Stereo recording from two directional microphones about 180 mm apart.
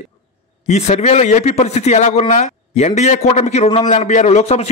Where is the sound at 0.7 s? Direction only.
40° left (ahead or behind).